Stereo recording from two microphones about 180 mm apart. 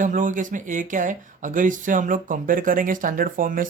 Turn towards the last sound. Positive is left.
turn(degrees=-50)  # may be behind; listen again after turning